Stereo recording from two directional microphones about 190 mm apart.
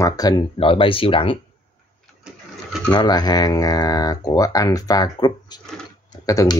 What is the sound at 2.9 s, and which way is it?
Speech, 20° left (ahead or behind).